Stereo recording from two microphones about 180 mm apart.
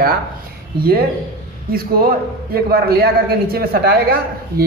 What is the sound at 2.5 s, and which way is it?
A man's voice, 60° right (ahead or behind).